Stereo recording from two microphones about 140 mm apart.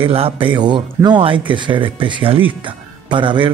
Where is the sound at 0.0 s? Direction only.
40° right (ahead or behind).